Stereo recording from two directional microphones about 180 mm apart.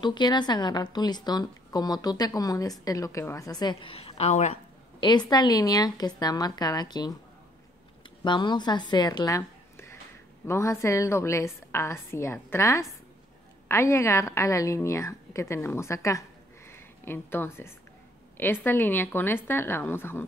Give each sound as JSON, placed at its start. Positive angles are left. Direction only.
{"t": 0.0, "sound": "speech", "side_deg": 25}
{"t": 5.0, "sound": "a woman's voice", "side_deg": 25}